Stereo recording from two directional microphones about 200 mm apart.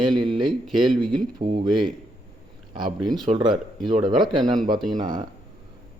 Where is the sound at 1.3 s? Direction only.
25° right (ahead or behind).